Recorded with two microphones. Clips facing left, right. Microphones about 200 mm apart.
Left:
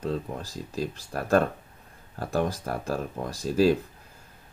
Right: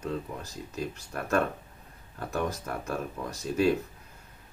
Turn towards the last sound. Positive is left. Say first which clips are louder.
# left 4 dB
turn(degrees=30)  # may be behind; listen again after turning